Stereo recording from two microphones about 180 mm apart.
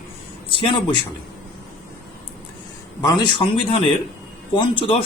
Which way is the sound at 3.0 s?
25° left (ahead or behind).